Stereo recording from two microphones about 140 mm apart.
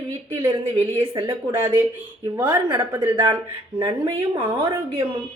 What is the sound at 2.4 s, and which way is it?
Speech, 35° right (ahead or behind).